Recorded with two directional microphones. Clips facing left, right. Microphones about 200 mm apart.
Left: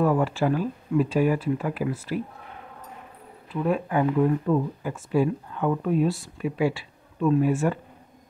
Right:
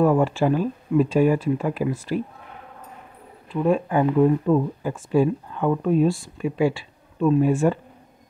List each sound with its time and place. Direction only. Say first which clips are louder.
0.0 s speech: right 4 dB; 25° right (ahead or behind)
3.6 s speech: right 3 dB; 30° right (ahead or behind)